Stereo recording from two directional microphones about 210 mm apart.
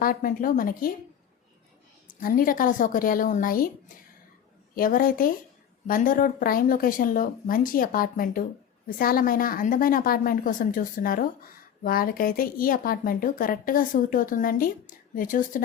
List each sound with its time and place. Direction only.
0.0 s speech: 40° left (ahead or behind)
2.2 s speech: 45° left (ahead or behind)
4.7 s a woman's voice: 40° left (ahead or behind)